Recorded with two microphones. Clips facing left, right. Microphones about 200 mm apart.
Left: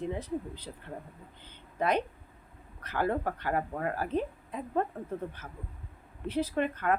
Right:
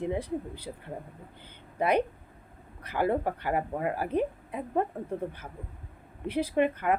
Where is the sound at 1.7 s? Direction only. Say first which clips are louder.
Right 3 dB; 10° right (ahead or behind).